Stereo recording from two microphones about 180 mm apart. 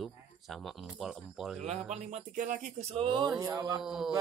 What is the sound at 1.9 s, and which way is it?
Speech, 40° right (ahead or behind).